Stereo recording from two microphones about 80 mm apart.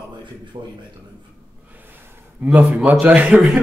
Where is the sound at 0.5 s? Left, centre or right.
Right.